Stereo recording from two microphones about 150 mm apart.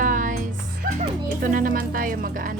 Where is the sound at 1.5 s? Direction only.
65° right (ahead or behind).